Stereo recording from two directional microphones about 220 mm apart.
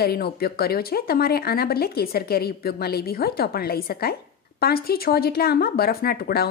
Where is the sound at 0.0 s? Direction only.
45° left (ahead or behind).